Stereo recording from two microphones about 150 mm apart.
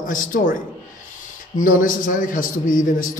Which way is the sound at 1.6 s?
65° left (ahead or behind).